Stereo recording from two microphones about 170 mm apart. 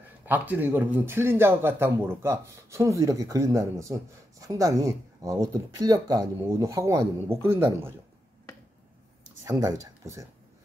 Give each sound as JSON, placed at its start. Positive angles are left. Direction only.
{"t": 0.2, "sound": "a man's voice", "side_deg": -10}
{"t": 9.4, "sound": "speech", "side_deg": -20}